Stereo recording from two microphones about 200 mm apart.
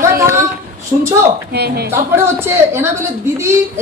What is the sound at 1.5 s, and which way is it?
Speech, 50° right (ahead or behind).